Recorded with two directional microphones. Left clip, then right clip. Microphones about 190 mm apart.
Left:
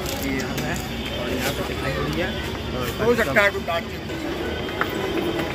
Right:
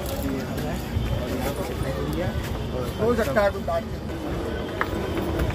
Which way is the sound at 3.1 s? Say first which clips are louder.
Left 3 dB; 25° right (ahead or behind).